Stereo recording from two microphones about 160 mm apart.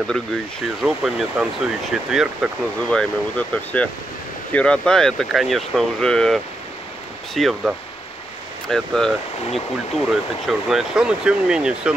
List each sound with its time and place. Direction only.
0.8 s speech: 5° right (ahead or behind)